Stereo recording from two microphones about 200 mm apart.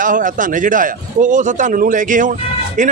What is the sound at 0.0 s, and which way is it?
A man's voice, 40° right (ahead or behind).